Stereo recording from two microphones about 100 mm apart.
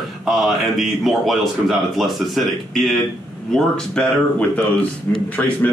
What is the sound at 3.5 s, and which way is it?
Speech, 10° left (ahead or behind).